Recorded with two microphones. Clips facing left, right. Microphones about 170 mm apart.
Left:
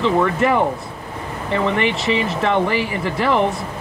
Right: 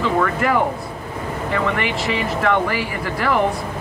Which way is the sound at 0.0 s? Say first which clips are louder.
Left 2 dB; 25° left (ahead or behind).